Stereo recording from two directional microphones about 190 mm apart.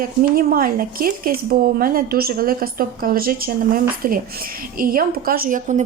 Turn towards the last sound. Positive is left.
turn(degrees=-40)  # may be behind; listen again after turning